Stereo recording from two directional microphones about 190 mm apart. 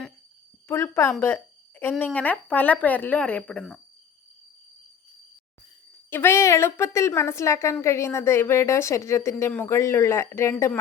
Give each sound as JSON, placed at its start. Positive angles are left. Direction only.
{"t": 0.7, "sound": "a woman's voice", "side_deg": 15}
{"t": 6.1, "sound": "a woman's voice", "side_deg": 10}